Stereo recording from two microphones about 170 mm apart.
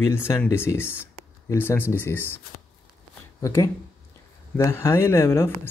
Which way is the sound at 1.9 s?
15° left (ahead or behind).